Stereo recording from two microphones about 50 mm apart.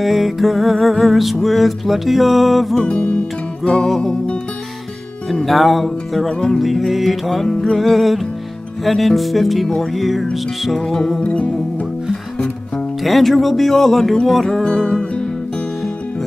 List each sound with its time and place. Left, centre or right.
0.0 s music: centre
2.8 s music: left
3.6 s music: centre
5.3 s music: centre
7.4 s music: centre
7.8 s music: centre
11.2 s music: left
13.0 s music: centre
14.6 s music: centre